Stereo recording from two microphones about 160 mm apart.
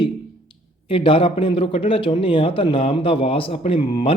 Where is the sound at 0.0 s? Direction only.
35° left (ahead or behind).